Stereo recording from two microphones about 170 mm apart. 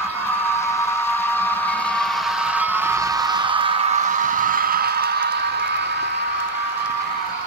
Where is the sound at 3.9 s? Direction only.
45° right (ahead or behind); by 5.3 s 65° right (ahead or behind).